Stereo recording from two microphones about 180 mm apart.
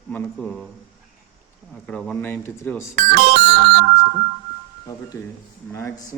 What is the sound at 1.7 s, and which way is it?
A man's voice, 5° left (ahead or behind).